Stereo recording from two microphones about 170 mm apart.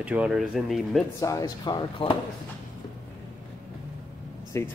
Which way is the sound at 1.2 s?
20° left (ahead or behind).